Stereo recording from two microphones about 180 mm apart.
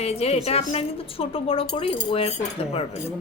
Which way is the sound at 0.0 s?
35° left (ahead or behind).